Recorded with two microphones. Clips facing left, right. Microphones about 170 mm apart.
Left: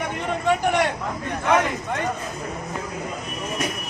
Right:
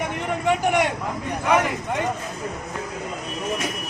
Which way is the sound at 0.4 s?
15° right (ahead or behind).